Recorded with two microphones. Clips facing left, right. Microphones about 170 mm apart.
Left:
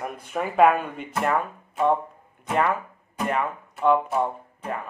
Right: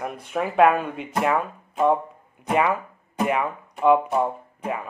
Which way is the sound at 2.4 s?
5° right (ahead or behind).